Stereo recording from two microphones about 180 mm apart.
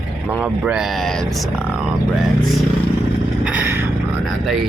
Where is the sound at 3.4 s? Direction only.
10° right (ahead or behind).